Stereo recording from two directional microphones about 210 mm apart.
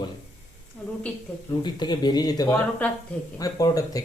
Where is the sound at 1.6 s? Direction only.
20° left (ahead or behind).